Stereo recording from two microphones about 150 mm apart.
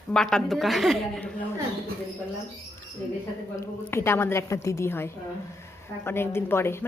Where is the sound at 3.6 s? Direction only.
15° left (ahead or behind).